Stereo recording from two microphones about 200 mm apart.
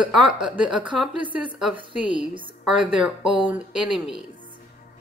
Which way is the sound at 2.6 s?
5° right (ahead or behind).